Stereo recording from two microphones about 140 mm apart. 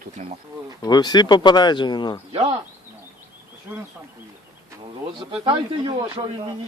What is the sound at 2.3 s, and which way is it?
Speech, 45° right (ahead or behind).